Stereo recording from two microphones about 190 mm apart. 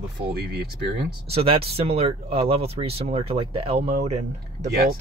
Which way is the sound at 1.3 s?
30° right (ahead or behind).